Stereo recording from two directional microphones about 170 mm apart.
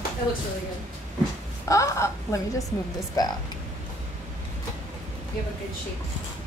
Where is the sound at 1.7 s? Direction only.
20° left (ahead or behind).